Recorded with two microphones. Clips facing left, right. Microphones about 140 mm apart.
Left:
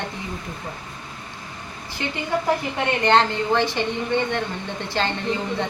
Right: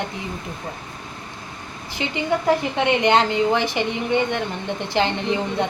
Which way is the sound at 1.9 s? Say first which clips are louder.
Right 2 dB; 15° right (ahead or behind).